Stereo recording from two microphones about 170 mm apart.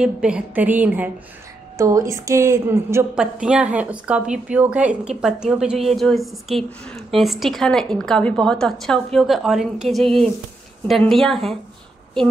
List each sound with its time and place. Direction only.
0.0 s a woman's voice: 5° right (ahead or behind)
3.2 s a woman's voice: 5° right (ahead or behind)